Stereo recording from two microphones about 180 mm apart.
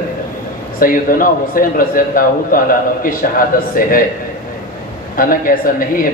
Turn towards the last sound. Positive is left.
turn(degrees=50)  # may be behind; listen again after turning